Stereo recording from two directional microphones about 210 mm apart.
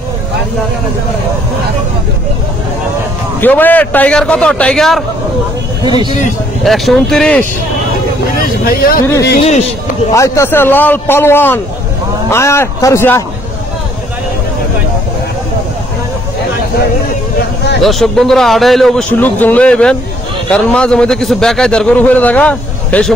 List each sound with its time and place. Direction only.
3.3 s a man's voice: 10° left (ahead or behind)
5.9 s speech: 20° right (ahead or behind)
6.6 s a man's voice: centre (ahead or behind)
8.4 s speech: 45° left (ahead or behind)
9.4 s a man's voice: 30° left (ahead or behind)
10.1 s a man's voice: 15° left (ahead or behind)
17.8 s a man's voice: centre (ahead or behind)